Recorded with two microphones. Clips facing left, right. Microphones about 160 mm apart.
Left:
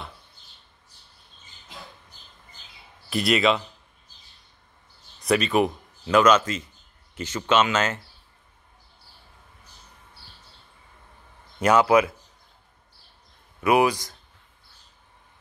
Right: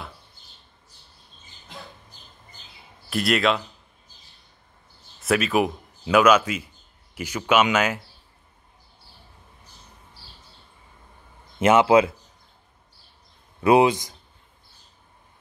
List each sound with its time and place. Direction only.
3.1 s speech: centre (ahead or behind)
5.2 s speech: 5° right (ahead or behind)
11.6 s speech: 25° right (ahead or behind)
13.6 s speech: 30° right (ahead or behind)